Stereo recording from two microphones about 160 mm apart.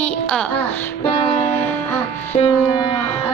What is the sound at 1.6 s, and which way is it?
Music, 10° left (ahead or behind).